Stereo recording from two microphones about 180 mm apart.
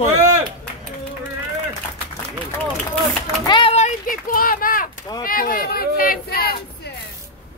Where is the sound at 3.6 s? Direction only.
35° left (ahead or behind).